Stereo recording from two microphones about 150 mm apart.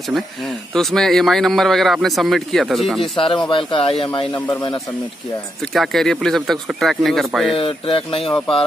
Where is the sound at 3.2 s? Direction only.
35° left (ahead or behind).